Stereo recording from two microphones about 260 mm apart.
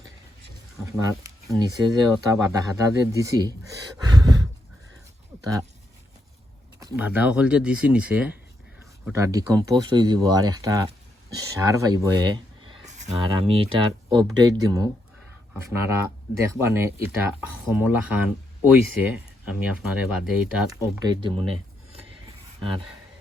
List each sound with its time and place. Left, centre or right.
0.9 s speech: centre
6.7 s speech: centre
16.4 s speech: centre